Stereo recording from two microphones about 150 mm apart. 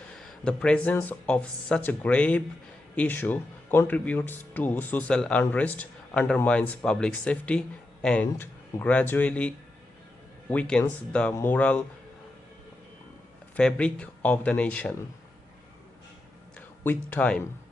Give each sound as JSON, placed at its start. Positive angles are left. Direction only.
{"t": 0.2, "sound": "speech", "side_deg": 5}
{"t": 10.5, "sound": "speech", "side_deg": 5}
{"t": 13.6, "sound": "speech", "side_deg": 5}
{"t": 16.6, "sound": "speech", "side_deg": 15}